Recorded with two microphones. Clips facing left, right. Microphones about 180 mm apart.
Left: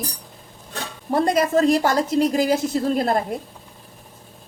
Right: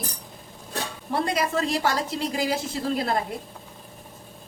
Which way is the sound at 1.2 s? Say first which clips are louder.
Left 10 dB; 45° left (ahead or behind).